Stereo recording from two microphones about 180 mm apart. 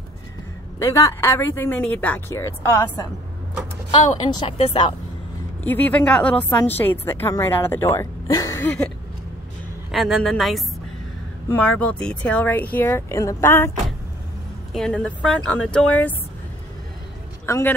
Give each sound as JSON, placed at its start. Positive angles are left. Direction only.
{"t": 0.8, "sound": "speech", "side_deg": 15}
{"t": 4.4, "sound": "speech", "side_deg": 25}
{"t": 5.6, "sound": "a woman's voice", "side_deg": 10}
{"t": 14.7, "sound": "a woman's voice", "side_deg": 5}
{"t": 17.5, "sound": "speech", "side_deg": 15}